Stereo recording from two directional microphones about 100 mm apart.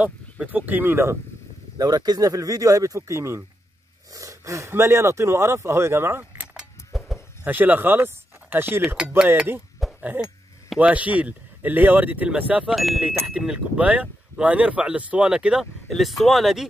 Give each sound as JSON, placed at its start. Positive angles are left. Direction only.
{"t": 0.0, "sound": "speech", "side_deg": -15}
{"t": 1.8, "sound": "speech", "side_deg": -40}
{"t": 6.4, "sound": "a sound", "side_deg": 0}
{"t": 7.4, "sound": "speech", "side_deg": -20}
{"t": 9.9, "sound": "a sound", "side_deg": -15}
{"t": 10.8, "sound": "speech", "side_deg": -15}
{"t": 12.6, "sound": "speech", "side_deg": 0}